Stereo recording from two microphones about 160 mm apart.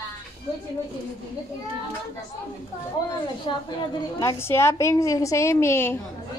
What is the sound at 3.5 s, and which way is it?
Speech, 30° left (ahead or behind).